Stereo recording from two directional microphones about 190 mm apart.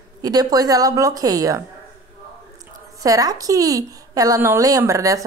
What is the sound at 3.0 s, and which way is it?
A woman's voice, 20° right (ahead or behind).